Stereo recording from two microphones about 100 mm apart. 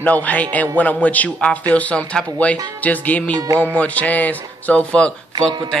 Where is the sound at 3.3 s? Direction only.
35° right (ahead or behind).